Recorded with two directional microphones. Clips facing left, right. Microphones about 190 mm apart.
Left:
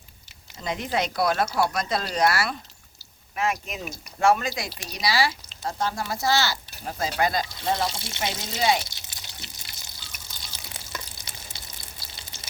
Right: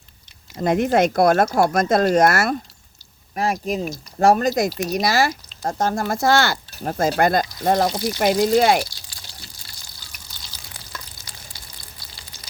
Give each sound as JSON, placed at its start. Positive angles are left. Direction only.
{"t": 0.5, "sound": "speech", "side_deg": -55}
{"t": 3.3, "sound": "speech", "side_deg": -35}
{"t": 8.9, "sound": "drip", "side_deg": 20}
{"t": 12.1, "sound": "frying", "side_deg": 25}